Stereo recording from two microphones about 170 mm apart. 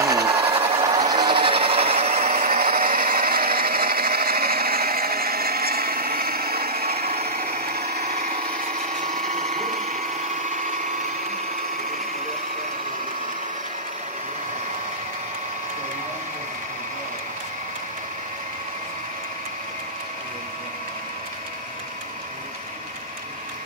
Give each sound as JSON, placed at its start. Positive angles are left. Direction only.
{"t": 0.0, "sound": "tools", "side_deg": -20}
{"t": 0.8, "sound": "tools", "side_deg": -20}
{"t": 2.3, "sound": "wood", "side_deg": -60}
{"t": 8.6, "sound": "a sound", "side_deg": -45}